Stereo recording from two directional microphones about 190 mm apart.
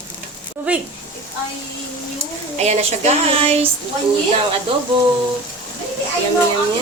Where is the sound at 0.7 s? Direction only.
5° right (ahead or behind).